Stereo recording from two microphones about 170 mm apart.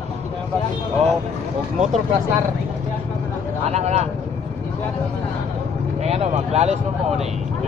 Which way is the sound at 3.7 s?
40° right (ahead or behind).